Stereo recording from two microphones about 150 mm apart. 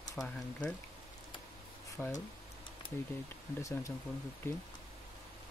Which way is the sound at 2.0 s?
20° left (ahead or behind).